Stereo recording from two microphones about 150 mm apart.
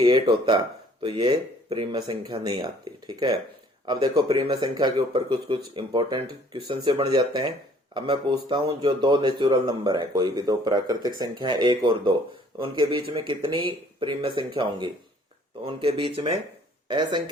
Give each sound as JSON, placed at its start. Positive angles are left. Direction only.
{"t": 0.0, "sound": "speech", "side_deg": -35}